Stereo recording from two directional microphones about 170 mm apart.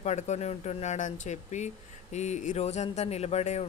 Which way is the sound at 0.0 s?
40° left (ahead or behind).